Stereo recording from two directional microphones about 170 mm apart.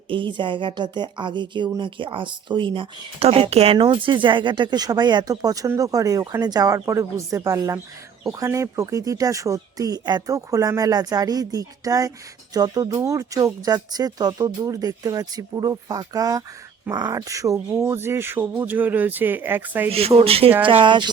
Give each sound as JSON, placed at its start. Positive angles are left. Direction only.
{"t": 0.1, "sound": "speech", "side_deg": -30}
{"t": 19.9, "sound": "speech", "side_deg": -35}